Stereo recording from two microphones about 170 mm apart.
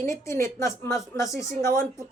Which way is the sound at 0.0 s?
15° left (ahead or behind).